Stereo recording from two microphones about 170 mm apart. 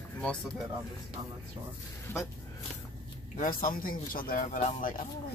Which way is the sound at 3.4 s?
55° left (ahead or behind).